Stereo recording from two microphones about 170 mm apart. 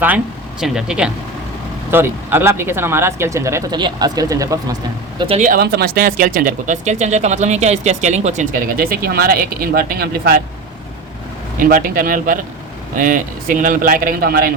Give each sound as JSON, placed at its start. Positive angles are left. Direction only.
{"t": 0.6, "sound": "speech", "side_deg": -5}
{"t": 5.4, "sound": "speech", "side_deg": -60}
{"t": 11.6, "sound": "speech", "side_deg": -55}